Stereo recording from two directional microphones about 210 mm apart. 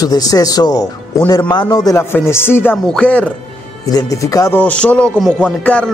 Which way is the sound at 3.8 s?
15° left (ahead or behind).